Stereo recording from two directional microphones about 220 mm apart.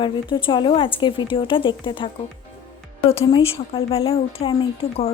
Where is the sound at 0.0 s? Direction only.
20° left (ahead or behind).